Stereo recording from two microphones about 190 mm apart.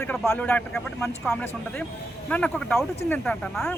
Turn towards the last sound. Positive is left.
turn(degrees=5)  # may be behind; listen again after turning